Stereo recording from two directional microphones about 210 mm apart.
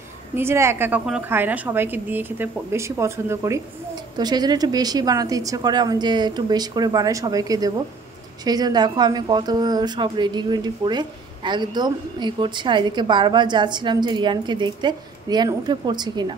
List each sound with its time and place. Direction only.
0.4 s a woman's voice: 10° right (ahead or behind)